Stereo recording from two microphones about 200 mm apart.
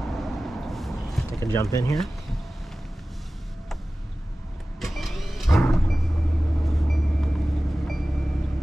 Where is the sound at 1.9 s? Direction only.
Centre (ahead or behind).